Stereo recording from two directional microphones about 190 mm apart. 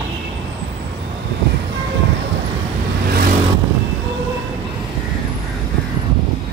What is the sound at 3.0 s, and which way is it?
Vehicle, 50° right (ahead or behind).